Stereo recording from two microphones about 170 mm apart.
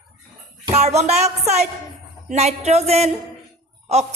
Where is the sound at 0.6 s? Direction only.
40° right (ahead or behind).